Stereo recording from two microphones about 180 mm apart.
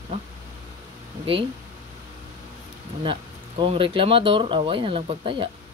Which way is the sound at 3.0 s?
30° right (ahead or behind).